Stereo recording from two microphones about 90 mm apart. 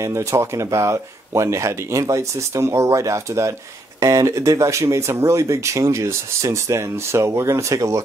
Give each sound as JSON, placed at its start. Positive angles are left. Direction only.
{"t": 0.0, "sound": "speech", "side_deg": -35}